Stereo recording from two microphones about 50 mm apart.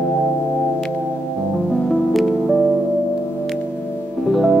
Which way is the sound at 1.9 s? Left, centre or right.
Centre.